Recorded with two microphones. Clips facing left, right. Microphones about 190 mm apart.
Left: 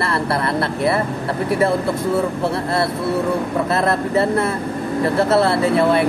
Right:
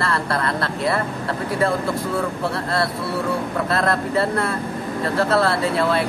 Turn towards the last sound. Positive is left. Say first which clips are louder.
# left 4 dB
turn(degrees=25)  # may be behind; listen again after turning